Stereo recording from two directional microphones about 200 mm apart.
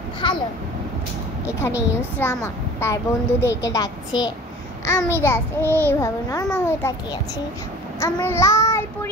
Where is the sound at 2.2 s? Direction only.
10° left (ahead or behind).